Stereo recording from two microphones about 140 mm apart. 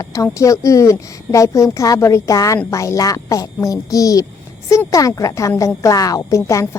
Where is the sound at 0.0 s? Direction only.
25° left (ahead or behind).